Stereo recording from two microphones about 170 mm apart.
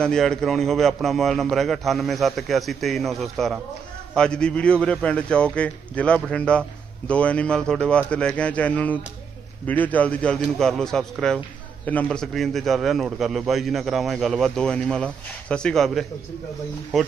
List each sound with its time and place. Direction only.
0.0 s a man's voice: 5° left (ahead or behind)